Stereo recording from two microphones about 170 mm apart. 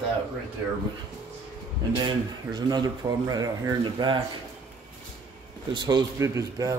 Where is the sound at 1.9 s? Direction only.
25° right (ahead or behind).